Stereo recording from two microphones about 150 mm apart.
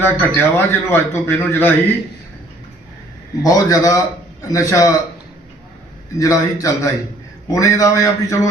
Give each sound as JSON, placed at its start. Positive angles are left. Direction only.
{"t": 0.0, "sound": "a man's voice", "side_deg": 15}
{"t": 3.4, "sound": "a man's voice", "side_deg": 25}
{"t": 6.1, "sound": "a man's voice", "side_deg": 20}